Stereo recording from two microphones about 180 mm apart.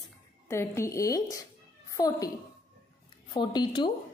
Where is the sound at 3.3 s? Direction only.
25° left (ahead or behind).